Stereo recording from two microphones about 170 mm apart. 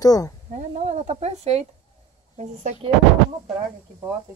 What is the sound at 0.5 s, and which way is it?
A woman's voice, 45° right (ahead or behind).